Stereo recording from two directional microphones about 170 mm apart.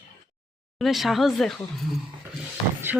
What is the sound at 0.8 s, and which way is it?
A woman's voice, centre (ahead or behind).